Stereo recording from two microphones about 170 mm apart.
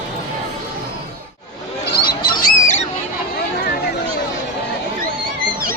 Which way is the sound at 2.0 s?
60° left (ahead or behind).